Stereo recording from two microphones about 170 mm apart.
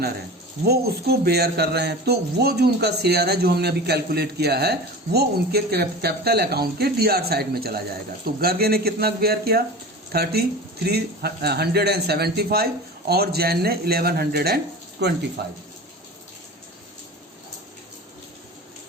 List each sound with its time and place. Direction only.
0.6 s speech: 70° right (ahead or behind)
15.0 s speech: 80° right
15.4 s speech: 70° right (ahead or behind)